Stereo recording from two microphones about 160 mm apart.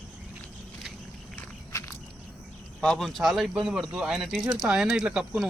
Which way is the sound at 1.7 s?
20° left (ahead or behind).